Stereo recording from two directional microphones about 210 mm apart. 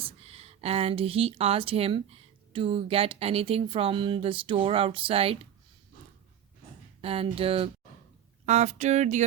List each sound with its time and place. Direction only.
0.0 s speech: 30° right (ahead or behind)
7.0 s speech: 25° right (ahead or behind)